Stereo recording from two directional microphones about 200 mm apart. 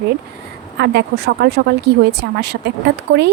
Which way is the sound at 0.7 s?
55° right (ahead or behind).